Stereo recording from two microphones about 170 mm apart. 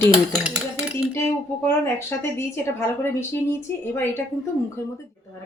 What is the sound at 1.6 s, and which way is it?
Speech, 15° left (ahead or behind).